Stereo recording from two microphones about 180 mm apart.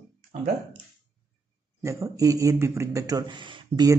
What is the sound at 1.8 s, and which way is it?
Speech, 15° right (ahead or behind).